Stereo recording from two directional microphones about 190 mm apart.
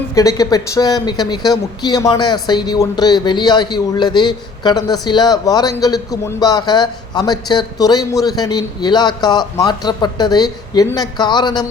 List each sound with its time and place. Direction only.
0.1 s speech: 20° left (ahead or behind)